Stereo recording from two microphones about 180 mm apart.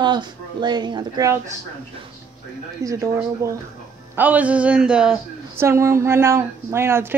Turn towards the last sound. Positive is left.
turn(degrees=-15)  # may be behind; listen again after turning